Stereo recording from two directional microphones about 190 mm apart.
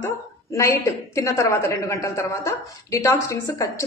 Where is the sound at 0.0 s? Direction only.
15° left (ahead or behind).